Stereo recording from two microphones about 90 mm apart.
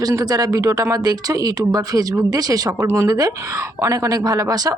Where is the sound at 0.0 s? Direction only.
40° right (ahead or behind).